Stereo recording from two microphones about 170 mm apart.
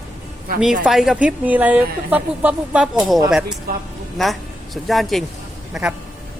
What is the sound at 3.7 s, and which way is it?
Speech, 60° right (ahead or behind).